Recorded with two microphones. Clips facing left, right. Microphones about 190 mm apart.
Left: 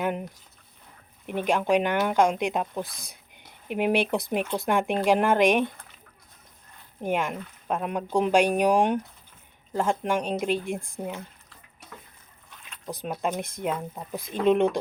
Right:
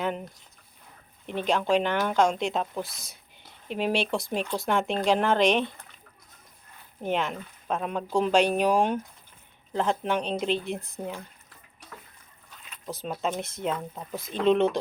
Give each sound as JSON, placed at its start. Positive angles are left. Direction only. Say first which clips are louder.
{"t": 0.0, "sound": "speech", "louder": "left 2 dB", "side_deg": 10}
{"t": 1.3, "sound": "speech", "louder": "left 1 dB", "side_deg": 15}
{"t": 7.0, "sound": "speech", "louder": "left 1 dB", "side_deg": 10}
{"t": 12.8, "sound": "speech", "louder": "left 1 dB", "side_deg": 15}